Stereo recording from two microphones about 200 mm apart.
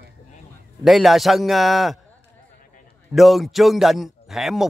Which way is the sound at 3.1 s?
Centre (ahead or behind).